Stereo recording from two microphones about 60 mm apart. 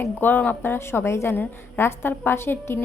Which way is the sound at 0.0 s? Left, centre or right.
Left.